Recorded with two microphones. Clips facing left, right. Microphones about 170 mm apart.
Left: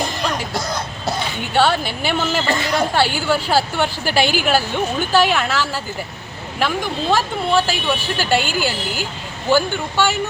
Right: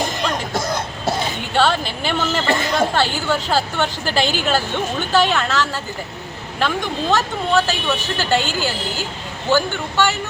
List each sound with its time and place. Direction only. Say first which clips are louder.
0.5 s cough: right 2 dB; 25° right (ahead or behind)
1.5 s a woman's voice: left 1 dB; 5° left (ahead or behind)